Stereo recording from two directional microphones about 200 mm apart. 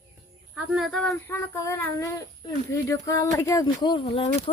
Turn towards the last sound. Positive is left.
turn(degrees=25)  # may be behind; listen again after turning